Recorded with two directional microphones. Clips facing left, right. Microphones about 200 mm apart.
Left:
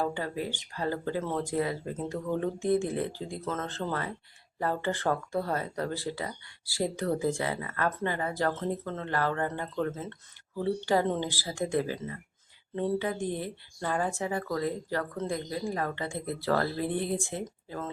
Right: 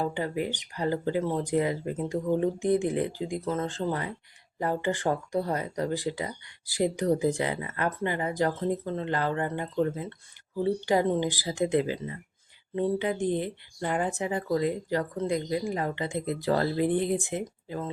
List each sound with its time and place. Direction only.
0.0 s speech: 15° right (ahead or behind)